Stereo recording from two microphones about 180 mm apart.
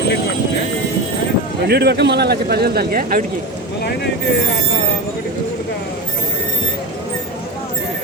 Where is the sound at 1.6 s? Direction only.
65° right (ahead or behind).